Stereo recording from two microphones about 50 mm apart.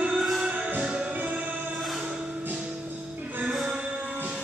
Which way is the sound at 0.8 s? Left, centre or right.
Right.